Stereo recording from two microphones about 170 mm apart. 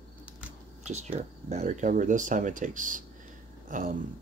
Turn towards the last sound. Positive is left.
turn(degrees=-50)  # may be behind; listen again after turning